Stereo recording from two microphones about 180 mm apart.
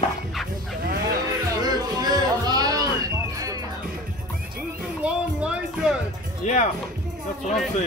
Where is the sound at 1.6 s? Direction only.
20° right (ahead or behind).